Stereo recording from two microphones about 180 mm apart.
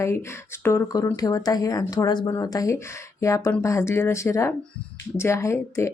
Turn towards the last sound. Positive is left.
turn(degrees=15)  # may be behind; listen again after turning